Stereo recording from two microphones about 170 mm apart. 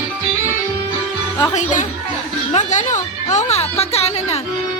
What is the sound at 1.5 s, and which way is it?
A woman's voice, 50° left (ahead or behind).